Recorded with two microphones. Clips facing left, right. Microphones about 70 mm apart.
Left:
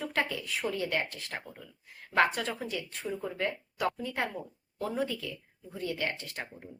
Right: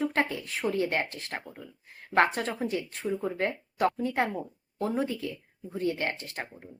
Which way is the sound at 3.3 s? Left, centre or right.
Right.